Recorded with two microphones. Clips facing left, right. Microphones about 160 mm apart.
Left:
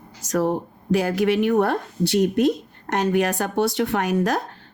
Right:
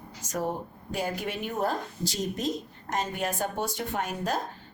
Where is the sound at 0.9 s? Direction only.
85° left.